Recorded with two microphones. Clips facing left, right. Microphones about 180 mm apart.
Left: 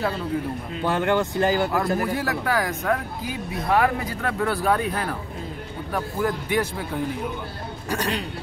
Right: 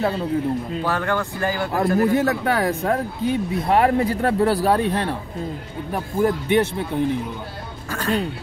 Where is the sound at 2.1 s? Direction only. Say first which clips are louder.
Right 5 dB; 25° right (ahead or behind).